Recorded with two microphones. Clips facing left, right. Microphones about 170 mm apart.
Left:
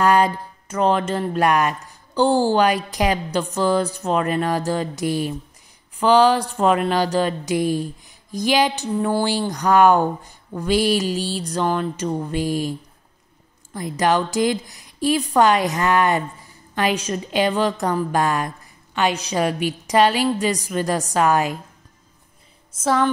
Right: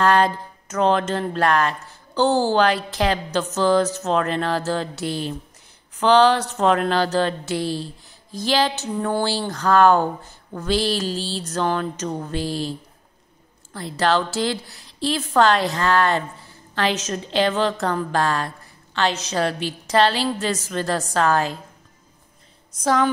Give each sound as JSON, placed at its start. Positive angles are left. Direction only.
{"t": 0.0, "sound": "speech", "side_deg": 10}
{"t": 8.9, "sound": "a woman's voice", "side_deg": 0}
{"t": 9.2, "sound": "speech", "side_deg": 15}
{"t": 13.7, "sound": "speech", "side_deg": 15}
{"t": 22.8, "sound": "a woman's voice", "side_deg": 0}